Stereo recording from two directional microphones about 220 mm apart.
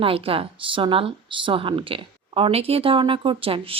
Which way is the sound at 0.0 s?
25° right (ahead or behind).